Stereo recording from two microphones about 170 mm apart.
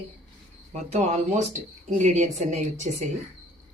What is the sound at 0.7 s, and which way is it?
A woman's voice, 40° right (ahead or behind).